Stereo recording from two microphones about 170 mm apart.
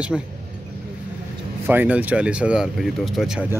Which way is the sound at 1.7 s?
10° right (ahead or behind).